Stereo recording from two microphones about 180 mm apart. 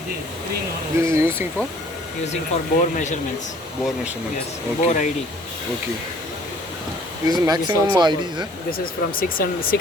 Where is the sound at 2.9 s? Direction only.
40° left (ahead or behind).